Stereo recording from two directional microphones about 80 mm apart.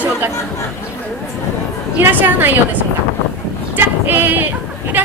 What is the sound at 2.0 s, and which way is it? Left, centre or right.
A woman's voice, right.